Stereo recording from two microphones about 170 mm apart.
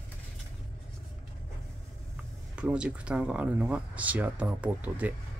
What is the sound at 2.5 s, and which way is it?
Speech, 5° right (ahead or behind).